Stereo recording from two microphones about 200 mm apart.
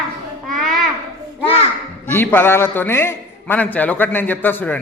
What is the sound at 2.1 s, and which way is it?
A man's voice, 10° left (ahead or behind).